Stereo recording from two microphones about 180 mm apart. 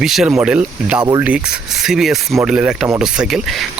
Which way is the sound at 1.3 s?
5° right (ahead or behind).